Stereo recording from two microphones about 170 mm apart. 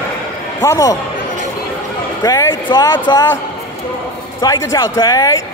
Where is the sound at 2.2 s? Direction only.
20° left (ahead or behind).